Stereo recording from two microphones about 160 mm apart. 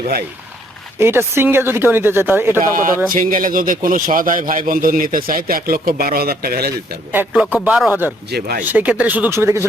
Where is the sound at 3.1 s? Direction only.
60° right (ahead or behind); by 7.0 s 75° right (ahead or behind).